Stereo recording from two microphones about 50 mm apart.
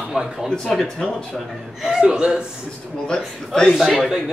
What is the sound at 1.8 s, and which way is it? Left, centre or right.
Speech, centre.